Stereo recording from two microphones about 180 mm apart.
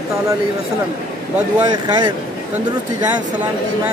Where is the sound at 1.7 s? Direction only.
20° right (ahead or behind).